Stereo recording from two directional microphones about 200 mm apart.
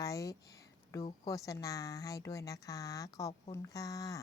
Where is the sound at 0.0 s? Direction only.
15° left (ahead or behind).